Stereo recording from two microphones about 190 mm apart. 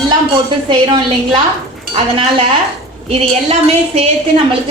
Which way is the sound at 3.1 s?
30° right (ahead or behind).